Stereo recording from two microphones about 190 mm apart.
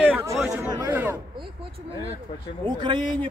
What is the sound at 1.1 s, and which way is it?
Speech, 25° right (ahead or behind).